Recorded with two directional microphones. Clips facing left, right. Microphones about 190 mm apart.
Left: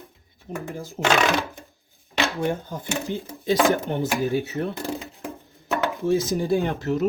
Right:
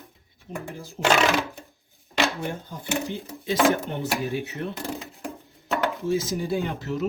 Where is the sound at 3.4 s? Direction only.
35° left (ahead or behind).